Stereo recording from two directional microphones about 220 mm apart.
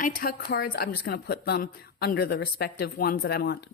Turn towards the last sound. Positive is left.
turn(degrees=45)  # may be behind; listen again after turning